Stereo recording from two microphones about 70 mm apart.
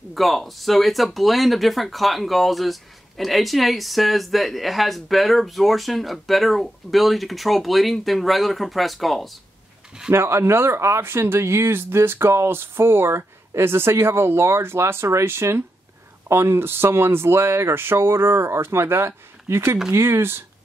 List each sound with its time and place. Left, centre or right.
0.1 s speech: centre
10.1 s speech: right